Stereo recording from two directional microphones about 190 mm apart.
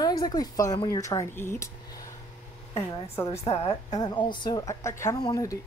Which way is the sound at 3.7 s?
20° left (ahead or behind).